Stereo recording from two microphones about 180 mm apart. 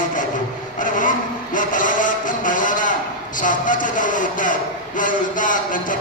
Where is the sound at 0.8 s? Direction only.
45° left (ahead or behind).